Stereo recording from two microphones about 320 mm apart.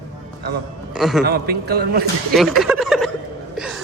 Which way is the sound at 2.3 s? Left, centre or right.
Centre.